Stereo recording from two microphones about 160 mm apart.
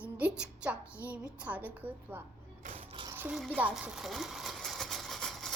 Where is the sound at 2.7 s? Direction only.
30° right (ahead or behind).